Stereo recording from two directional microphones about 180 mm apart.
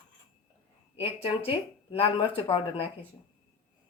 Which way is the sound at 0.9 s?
30° left (ahead or behind).